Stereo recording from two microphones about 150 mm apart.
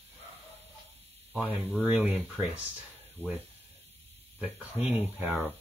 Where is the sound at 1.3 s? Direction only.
10° right (ahead or behind).